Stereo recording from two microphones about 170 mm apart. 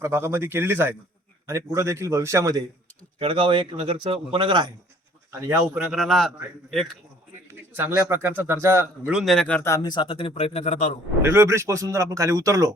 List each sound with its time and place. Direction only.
0.0 s speech: 15° right (ahead or behind)
3.2 s a man's voice: 30° right (ahead or behind)
5.3 s speech: 15° right (ahead or behind)
5.8 s a man's voice: centre (ahead or behind)
7.7 s speech: 10° right (ahead or behind)
9.1 s speech: centre (ahead or behind); by 10.9 s 45° left (ahead or behind)
11.2 s speech: 15° right (ahead or behind)